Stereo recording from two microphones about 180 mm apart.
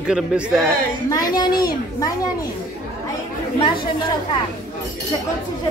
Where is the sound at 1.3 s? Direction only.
20° left (ahead or behind).